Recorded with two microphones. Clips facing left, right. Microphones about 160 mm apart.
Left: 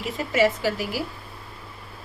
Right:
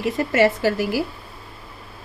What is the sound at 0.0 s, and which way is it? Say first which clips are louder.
Speech: right 4 dB; 65° right (ahead or behind).